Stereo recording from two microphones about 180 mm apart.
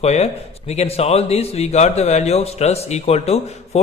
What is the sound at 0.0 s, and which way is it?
A man's voice, 35° left (ahead or behind).